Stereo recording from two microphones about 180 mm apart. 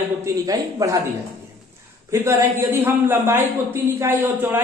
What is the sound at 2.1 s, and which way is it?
A man's voice, 15° right (ahead or behind).